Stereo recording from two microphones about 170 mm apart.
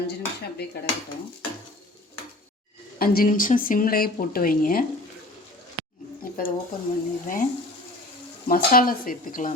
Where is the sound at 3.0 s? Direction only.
55° left (ahead or behind).